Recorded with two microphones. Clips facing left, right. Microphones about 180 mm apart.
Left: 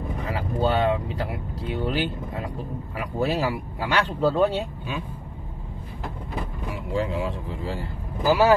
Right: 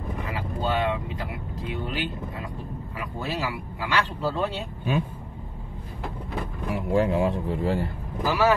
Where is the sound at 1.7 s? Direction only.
40° left (ahead or behind).